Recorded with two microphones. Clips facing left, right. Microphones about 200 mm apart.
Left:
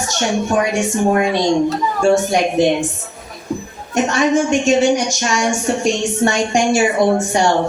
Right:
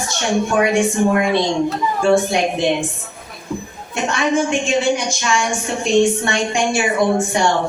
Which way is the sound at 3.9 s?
40° left (ahead or behind).